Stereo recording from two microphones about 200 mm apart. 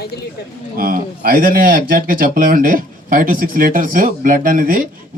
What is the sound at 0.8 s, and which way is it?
A man's voice, 45° right (ahead or behind).